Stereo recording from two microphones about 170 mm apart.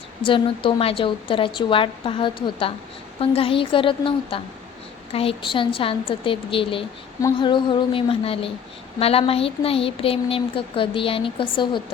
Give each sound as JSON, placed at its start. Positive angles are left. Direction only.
{"t": 0.2, "sound": "speech", "side_deg": 30}